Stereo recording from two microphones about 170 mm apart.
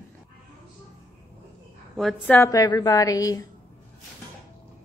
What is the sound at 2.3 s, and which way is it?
A woman's voice, 20° left (ahead or behind).